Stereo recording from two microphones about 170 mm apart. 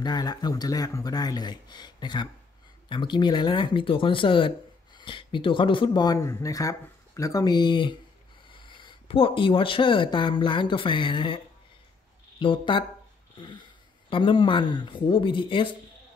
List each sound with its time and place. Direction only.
0.0 s speech: 25° left (ahead or behind)